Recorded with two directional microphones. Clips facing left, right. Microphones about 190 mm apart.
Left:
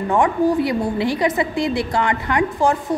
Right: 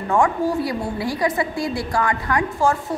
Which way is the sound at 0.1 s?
20° left (ahead or behind).